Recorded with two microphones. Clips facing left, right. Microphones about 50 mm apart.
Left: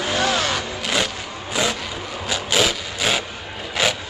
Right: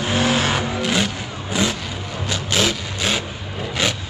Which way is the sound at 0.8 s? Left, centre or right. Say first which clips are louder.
Even; centre.